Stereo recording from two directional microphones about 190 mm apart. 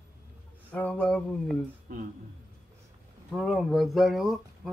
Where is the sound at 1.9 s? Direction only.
50° right (ahead or behind).